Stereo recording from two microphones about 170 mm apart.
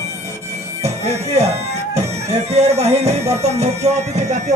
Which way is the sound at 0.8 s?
40° right (ahead or behind).